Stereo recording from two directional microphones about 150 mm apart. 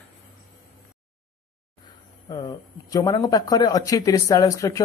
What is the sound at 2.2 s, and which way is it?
Speech, 25° left (ahead or behind).